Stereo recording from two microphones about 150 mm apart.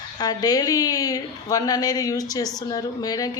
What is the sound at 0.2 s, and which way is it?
A woman's voice, 25° left (ahead or behind).